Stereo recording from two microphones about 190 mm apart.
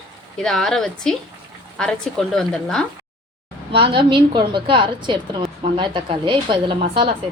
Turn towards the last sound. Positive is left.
turn(degrees=-30)  # may be behind; listen again after turning